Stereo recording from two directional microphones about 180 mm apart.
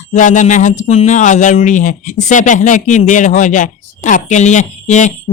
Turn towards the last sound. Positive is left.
turn(degrees=40)  # may be behind; listen again after turning